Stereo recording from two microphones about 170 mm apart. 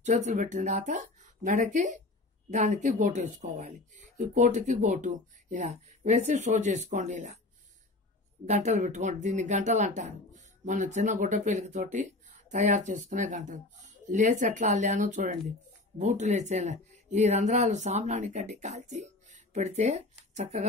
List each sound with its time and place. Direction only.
0.0 s speech: 45° right (ahead or behind)
8.5 s speech: 45° right (ahead or behind)